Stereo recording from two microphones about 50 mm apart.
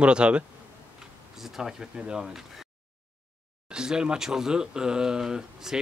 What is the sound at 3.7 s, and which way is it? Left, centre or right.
Speech, centre.